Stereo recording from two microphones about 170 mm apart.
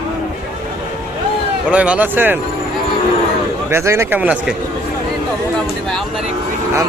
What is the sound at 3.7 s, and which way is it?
Speech, 15° right (ahead or behind).